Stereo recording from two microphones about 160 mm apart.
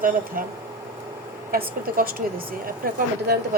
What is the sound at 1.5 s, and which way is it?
A woman's voice, 65° right (ahead or behind).